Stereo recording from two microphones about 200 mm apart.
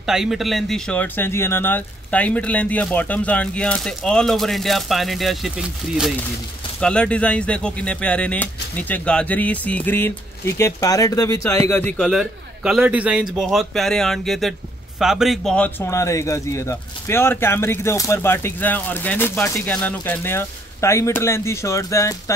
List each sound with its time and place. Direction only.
0.0 s a man's voice: centre (ahead or behind); by 22.1 s 15° left (ahead or behind)